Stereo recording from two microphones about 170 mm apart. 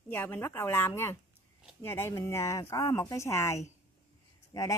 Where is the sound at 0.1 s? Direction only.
10° left (ahead or behind).